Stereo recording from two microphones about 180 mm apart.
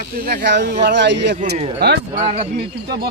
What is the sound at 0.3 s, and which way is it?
Speech, 65° right (ahead or behind).